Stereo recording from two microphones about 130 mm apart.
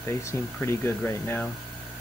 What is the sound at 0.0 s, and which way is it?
Speech, 20° left (ahead or behind).